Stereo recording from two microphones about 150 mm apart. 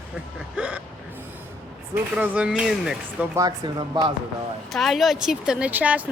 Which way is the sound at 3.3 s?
25° right (ahead or behind).